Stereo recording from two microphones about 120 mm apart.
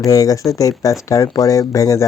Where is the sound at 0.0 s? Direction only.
30° left (ahead or behind).